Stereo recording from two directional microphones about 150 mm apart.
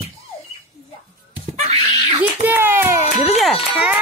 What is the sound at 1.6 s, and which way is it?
Wail, 50° right (ahead or behind).